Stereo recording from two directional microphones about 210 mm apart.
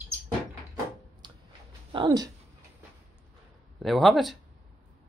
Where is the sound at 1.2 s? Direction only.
20° right (ahead or behind).